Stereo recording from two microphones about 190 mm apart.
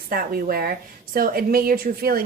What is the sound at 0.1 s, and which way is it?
A woman's voice, 50° right (ahead or behind).